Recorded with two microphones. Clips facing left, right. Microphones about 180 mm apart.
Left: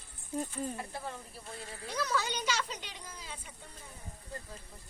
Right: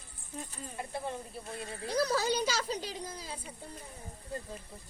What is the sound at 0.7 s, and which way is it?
Speech, 25° right (ahead or behind).